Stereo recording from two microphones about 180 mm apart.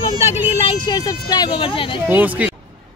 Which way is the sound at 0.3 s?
25° left (ahead or behind).